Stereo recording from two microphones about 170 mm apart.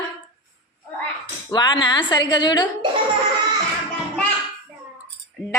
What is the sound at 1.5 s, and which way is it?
A woman's voice, 25° left (ahead or behind).